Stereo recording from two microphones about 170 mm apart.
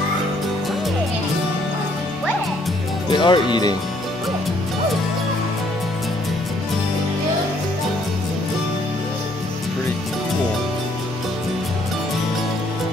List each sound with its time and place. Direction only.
3.1 s speech: 25° left (ahead or behind)